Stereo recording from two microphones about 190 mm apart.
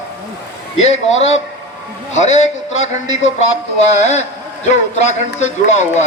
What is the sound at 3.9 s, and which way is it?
A man's voice, 35° left (ahead or behind).